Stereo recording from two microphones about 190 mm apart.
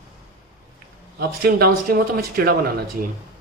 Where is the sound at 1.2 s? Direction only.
55° right (ahead or behind).